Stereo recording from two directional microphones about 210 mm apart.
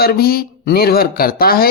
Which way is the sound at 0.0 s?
45° left (ahead or behind).